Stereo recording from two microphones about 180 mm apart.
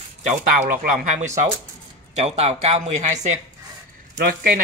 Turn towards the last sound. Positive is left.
turn(degrees=-55)  # may be behind; listen again after turning